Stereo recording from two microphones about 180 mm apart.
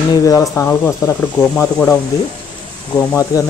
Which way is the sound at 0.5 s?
15° left (ahead or behind).